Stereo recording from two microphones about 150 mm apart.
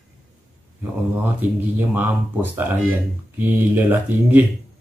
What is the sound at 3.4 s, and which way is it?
Speech, 10° right (ahead or behind).